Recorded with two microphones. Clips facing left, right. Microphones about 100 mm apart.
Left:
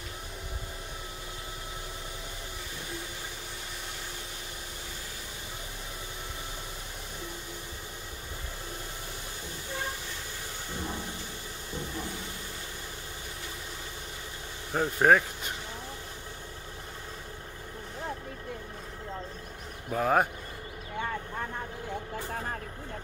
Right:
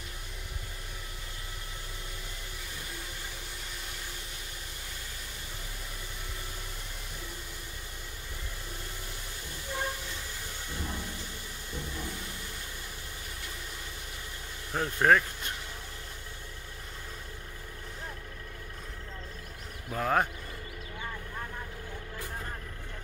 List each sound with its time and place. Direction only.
14.7 s speech: 10° left (ahead or behind)
19.9 s speech: 10° left (ahead or behind)
21.0 s vehicle: 90° left